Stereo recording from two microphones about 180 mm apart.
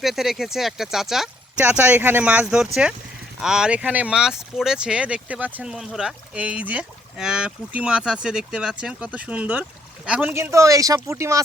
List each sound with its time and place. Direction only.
0.0 s speech: centre (ahead or behind)